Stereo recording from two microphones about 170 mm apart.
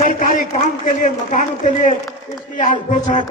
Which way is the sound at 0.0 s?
50° left (ahead or behind).